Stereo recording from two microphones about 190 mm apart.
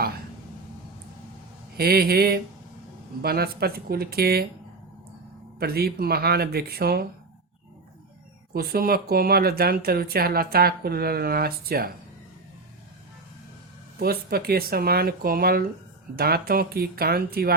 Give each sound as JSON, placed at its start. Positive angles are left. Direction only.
{"t": 1.7, "sound": "speech", "side_deg": -55}
{"t": 5.5, "sound": "speech", "side_deg": -55}
{"t": 8.5, "sound": "speech", "side_deg": -50}
{"t": 14.0, "sound": "speech", "side_deg": -55}